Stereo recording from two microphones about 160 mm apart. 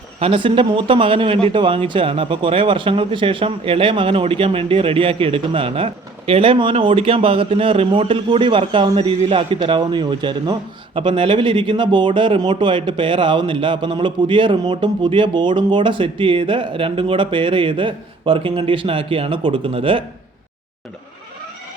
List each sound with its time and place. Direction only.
0.2 s speech: 35° right (ahead or behind)